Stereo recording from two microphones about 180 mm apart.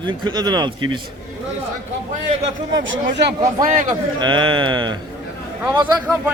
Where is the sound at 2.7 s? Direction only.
90° right.